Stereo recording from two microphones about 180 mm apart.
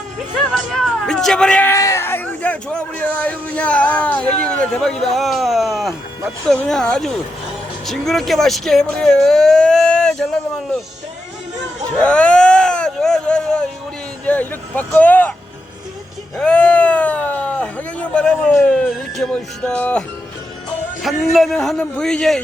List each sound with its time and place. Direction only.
0.7 s a sound: 5° left (ahead or behind)
6.5 s speech: 5° left (ahead or behind)
11.9 s a sound: 5° left (ahead or behind)
14.3 s speech: 10° left (ahead or behind)
16.4 s speech: 5° left (ahead or behind)
21.3 s speech: centre (ahead or behind)